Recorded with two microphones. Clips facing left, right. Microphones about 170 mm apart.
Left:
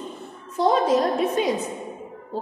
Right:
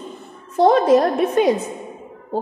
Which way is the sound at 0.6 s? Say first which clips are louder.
Right 6 dB; 60° right (ahead or behind).